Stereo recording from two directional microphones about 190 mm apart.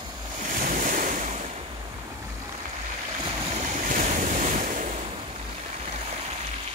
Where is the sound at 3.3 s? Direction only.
30° right (ahead or behind).